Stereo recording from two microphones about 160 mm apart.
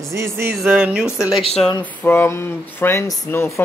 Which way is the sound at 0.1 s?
15° right (ahead or behind).